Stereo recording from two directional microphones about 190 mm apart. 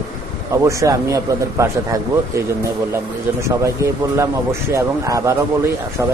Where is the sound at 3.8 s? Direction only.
15° right (ahead or behind).